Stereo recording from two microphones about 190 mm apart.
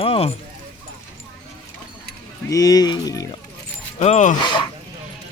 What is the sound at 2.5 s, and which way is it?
Speech, 20° left (ahead or behind).